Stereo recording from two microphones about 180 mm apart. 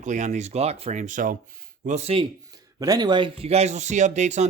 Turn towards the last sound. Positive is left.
turn(degrees=-40)  # may be behind; listen again after turning